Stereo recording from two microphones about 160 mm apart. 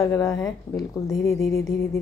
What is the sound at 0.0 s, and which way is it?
A woman's voice, 20° left (ahead or behind).